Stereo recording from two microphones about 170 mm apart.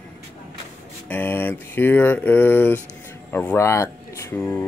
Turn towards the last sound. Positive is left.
turn(degrees=10)  # may be behind; listen again after turning